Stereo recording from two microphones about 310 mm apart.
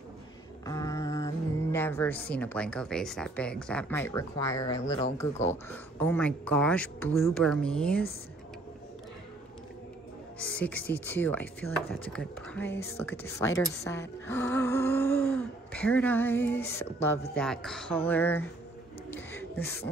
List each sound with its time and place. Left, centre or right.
0.7 s music: centre
2.3 s speech: centre
10.6 s a woman's voice: centre
19.1 s a sound: centre